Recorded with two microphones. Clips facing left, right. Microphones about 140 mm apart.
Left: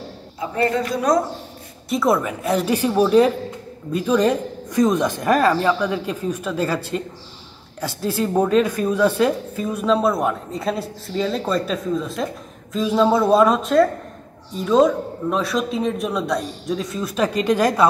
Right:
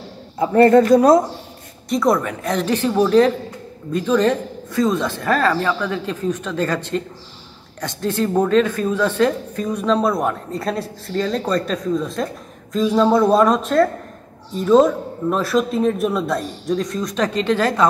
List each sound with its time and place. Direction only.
0.4 s a man's voice: 50° right (ahead or behind)
1.9 s a woman's voice: 5° left (ahead or behind)